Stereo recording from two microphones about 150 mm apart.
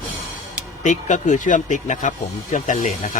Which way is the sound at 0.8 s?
55° left (ahead or behind).